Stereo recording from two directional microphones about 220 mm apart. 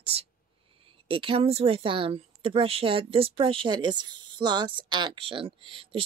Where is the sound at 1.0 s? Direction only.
25° right (ahead or behind).